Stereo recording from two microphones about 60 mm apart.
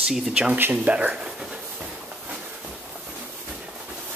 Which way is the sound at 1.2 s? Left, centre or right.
Centre.